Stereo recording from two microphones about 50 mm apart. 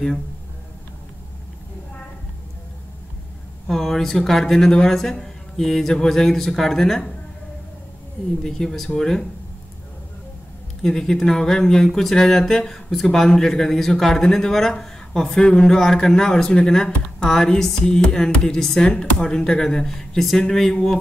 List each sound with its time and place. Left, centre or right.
3.6 s speech: centre
8.5 s speech: centre
10.8 s speech: centre
15.4 s a man's voice: left
15.7 s speech: centre